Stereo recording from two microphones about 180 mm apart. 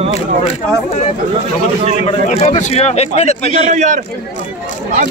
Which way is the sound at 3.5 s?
40° right (ahead or behind).